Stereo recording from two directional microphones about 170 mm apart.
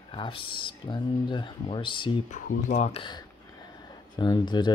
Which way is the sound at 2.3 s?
45° left (ahead or behind).